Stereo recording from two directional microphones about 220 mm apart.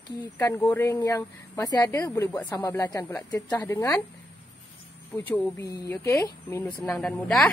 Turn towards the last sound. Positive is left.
turn(degrees=0)  # may be behind; listen again after turning